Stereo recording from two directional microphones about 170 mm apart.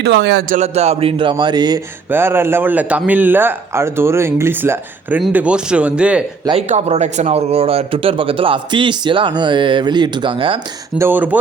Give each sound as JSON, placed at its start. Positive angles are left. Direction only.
{"t": 0.0, "sound": "a man's voice", "side_deg": -85}
{"t": 0.5, "sound": "a man's voice", "side_deg": -40}
{"t": 2.0, "sound": "speech", "side_deg": -15}
{"t": 6.6, "sound": "speech", "side_deg": -40}
{"t": 10.9, "sound": "speech", "side_deg": -15}